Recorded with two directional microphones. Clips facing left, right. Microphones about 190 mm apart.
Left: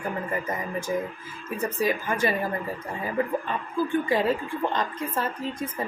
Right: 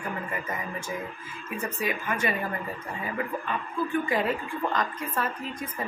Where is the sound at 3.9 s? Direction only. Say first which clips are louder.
Left 3 dB; 30° left (ahead or behind).